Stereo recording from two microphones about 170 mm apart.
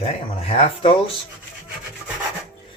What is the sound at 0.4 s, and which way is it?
Speech, 35° left (ahead or behind).